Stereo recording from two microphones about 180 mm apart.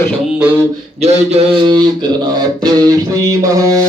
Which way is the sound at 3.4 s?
20° right (ahead or behind).